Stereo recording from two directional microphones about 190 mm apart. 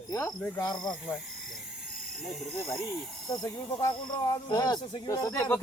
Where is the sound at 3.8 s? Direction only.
20° left (ahead or behind).